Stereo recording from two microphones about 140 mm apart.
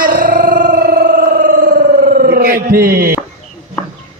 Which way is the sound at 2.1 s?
90° right.